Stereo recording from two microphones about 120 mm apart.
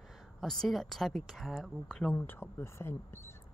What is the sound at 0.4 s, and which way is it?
Speech, centre (ahead or behind).